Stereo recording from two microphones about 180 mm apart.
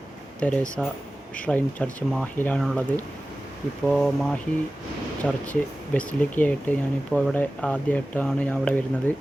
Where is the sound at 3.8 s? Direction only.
5° left (ahead or behind).